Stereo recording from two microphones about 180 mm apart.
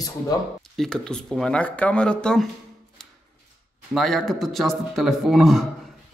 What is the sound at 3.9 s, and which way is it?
Speech, centre (ahead or behind).